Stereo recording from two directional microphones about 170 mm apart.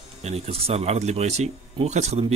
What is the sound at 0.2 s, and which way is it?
Speech, 35° right (ahead or behind).